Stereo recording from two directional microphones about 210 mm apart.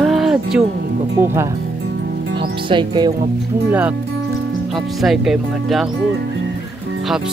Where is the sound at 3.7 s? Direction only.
5° right (ahead or behind).